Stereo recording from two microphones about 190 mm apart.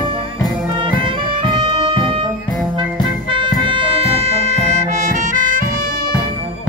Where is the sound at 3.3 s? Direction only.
25° right (ahead or behind); by 5.7 s 40° right (ahead or behind).